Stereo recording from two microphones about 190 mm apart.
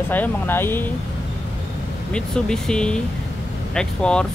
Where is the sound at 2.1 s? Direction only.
5° left (ahead or behind).